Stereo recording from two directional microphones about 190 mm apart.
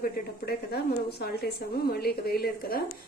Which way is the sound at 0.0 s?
55° left (ahead or behind).